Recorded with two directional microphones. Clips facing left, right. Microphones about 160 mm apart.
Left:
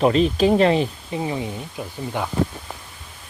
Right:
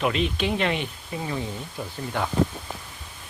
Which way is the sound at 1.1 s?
20° left (ahead or behind).